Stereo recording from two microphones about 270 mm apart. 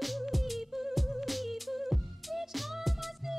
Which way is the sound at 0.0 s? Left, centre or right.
Centre.